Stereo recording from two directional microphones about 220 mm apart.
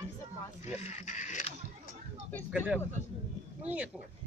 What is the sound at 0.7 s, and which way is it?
Speech, 30° left (ahead or behind).